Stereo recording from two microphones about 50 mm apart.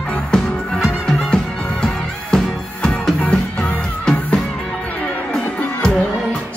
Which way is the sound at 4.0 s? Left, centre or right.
Centre.